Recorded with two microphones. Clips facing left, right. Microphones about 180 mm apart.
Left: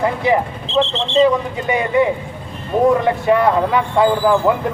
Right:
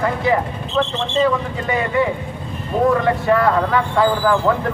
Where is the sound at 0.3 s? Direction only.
25° left (ahead or behind).